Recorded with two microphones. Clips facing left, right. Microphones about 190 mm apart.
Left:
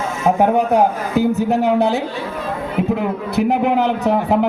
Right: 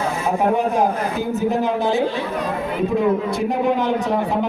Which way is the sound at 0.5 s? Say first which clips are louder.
Left 3 dB; 70° left (ahead or behind).